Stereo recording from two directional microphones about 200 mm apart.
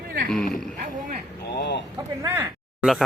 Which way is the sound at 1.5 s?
55° left (ahead or behind).